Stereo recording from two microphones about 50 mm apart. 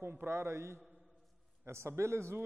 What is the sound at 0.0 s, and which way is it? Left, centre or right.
A man's voice, right.